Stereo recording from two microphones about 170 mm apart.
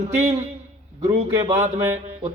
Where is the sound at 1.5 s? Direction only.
40° right (ahead or behind).